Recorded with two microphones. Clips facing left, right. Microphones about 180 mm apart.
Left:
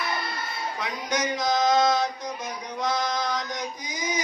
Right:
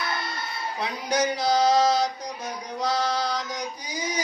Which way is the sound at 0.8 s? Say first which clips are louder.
Right 4 dB; 30° right (ahead or behind).